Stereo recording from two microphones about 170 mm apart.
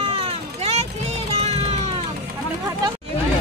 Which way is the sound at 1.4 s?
40° right (ahead or behind).